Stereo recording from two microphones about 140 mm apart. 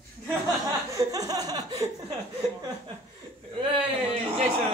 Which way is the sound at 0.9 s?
25° right (ahead or behind).